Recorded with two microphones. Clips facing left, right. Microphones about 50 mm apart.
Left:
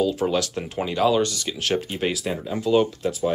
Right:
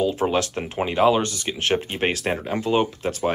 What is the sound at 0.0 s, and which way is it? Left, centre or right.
Speech, right.